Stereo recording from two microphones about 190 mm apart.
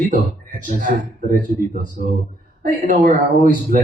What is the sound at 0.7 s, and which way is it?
Speech, 45° right (ahead or behind).